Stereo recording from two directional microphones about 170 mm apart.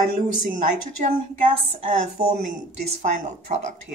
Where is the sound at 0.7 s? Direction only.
45° right (ahead or behind).